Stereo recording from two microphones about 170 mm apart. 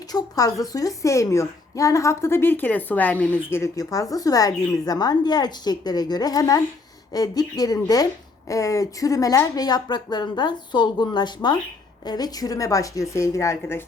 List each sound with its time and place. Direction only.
0.1 s a woman's voice: 20° left (ahead or behind)